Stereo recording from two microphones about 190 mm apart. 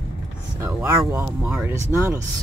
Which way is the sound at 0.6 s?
15° right (ahead or behind).